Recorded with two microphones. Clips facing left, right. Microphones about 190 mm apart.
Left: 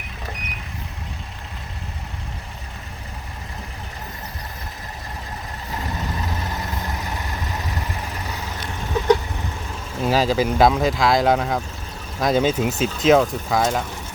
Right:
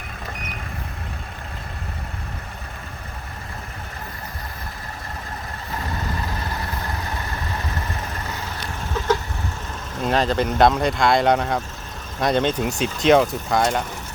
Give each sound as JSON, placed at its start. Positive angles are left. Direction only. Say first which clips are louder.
{"t": 8.9, "sound": "vehicle", "louder": "left 4 dB", "side_deg": 15}
{"t": 10.0, "sound": "speech", "louder": "left 1 dB", "side_deg": 5}